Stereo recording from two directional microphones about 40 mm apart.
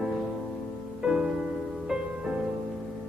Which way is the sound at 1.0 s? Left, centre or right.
Centre.